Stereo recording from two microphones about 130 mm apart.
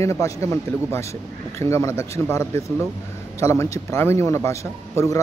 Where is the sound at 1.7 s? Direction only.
20° left (ahead or behind).